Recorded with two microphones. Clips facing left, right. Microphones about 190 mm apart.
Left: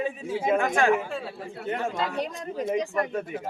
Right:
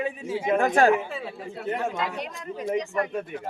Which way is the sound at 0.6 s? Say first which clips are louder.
Right 6 dB; 40° right (ahead or behind).